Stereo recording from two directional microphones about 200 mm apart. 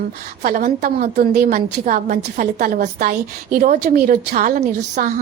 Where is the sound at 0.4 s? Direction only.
40° right (ahead or behind).